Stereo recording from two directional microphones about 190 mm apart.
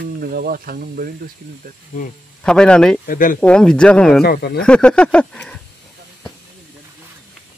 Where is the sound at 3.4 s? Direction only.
5° left (ahead or behind).